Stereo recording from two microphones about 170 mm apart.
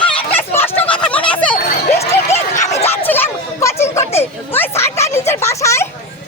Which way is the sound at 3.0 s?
10° left (ahead or behind).